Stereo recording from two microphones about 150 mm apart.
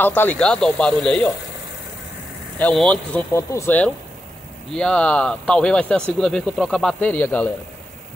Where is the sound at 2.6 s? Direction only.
5° left (ahead or behind).